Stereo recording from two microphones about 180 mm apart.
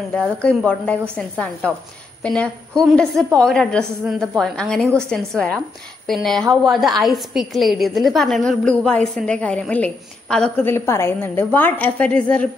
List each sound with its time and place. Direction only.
0.1 s a woman's voice: 5° left (ahead or behind)